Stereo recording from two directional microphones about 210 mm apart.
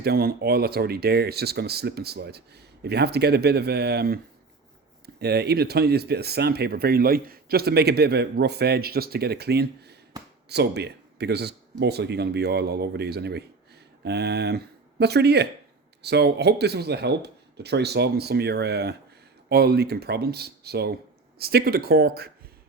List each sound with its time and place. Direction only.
0.0 s speech: 45° right (ahead or behind)